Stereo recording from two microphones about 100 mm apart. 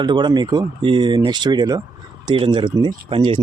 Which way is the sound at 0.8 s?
55° right (ahead or behind).